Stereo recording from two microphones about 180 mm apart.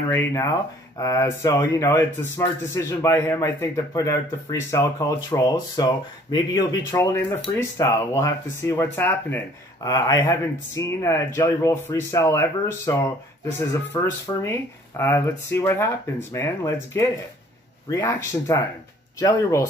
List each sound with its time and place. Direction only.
0.1 s speech: 15° left (ahead or behind)